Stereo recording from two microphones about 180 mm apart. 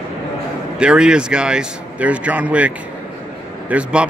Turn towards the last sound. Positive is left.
turn(degrees=-5)  # may be behind; listen again after turning